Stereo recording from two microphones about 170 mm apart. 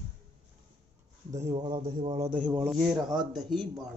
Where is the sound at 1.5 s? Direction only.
25° right (ahead or behind).